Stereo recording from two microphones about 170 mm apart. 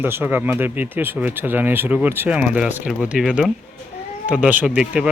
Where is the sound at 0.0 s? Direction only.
10° right (ahead or behind).